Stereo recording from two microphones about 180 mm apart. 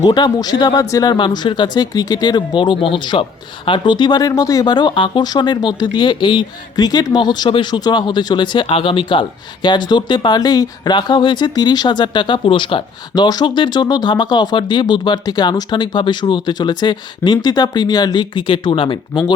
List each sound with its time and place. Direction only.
0.0 s speech: 25° left (ahead or behind)